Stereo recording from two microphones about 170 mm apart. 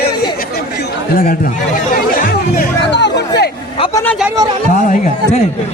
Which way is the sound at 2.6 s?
80° left.